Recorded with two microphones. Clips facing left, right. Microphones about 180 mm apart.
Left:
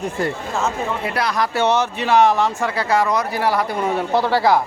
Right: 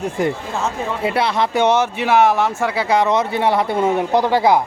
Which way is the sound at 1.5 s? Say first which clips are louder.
Right 3 dB; 10° right (ahead or behind).